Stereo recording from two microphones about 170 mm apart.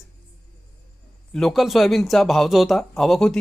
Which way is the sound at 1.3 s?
Centre (ahead or behind).